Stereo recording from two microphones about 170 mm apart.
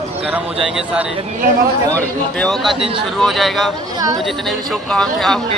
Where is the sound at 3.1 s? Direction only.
Centre (ahead or behind).